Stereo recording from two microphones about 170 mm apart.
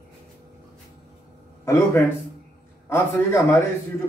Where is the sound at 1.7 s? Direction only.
15° left (ahead or behind).